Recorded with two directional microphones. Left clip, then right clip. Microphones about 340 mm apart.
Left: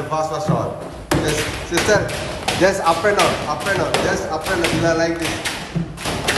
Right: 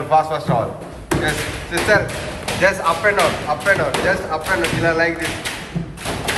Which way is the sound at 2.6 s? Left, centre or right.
Centre.